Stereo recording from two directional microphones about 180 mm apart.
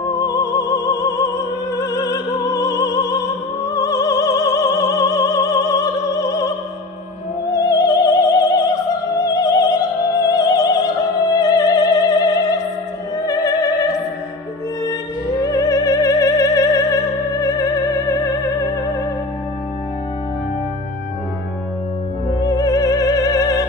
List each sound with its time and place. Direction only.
0.0 s music: 20° left (ahead or behind)
1.8 s opera: 20° left (ahead or behind)
7.7 s opera: 20° left (ahead or behind)
15.4 s music: 20° left (ahead or behind)
22.5 s music: 20° left (ahead or behind)